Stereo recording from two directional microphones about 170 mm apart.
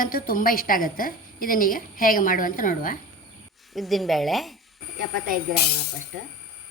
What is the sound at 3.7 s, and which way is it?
Speech, centre (ahead or behind).